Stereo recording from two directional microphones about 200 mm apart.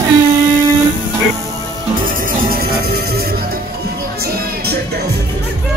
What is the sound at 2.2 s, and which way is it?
Music, 50° right (ahead or behind).